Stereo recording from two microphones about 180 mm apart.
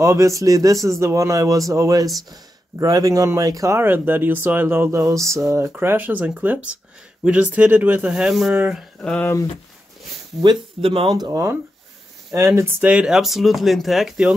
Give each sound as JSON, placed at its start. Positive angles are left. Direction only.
{"t": 0.0, "sound": "speech", "side_deg": -15}
{"t": 9.0, "sound": "speech", "side_deg": 5}
{"t": 10.4, "sound": "speech", "side_deg": -30}